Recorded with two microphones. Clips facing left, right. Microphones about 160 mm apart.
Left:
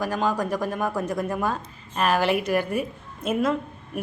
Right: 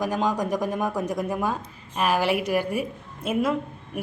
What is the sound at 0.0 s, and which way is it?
A woman's voice, 15° right (ahead or behind).